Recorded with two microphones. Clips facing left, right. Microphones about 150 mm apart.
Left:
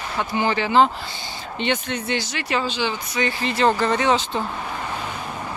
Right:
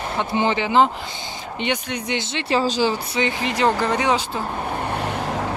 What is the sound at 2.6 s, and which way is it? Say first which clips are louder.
Speech: right 5 dB; 40° right (ahead or behind).